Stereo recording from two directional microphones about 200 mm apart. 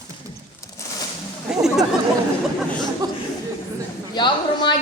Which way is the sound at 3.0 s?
20° right (ahead or behind).